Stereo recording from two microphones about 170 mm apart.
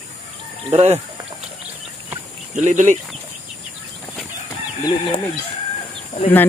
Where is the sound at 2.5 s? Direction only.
45° right (ahead or behind).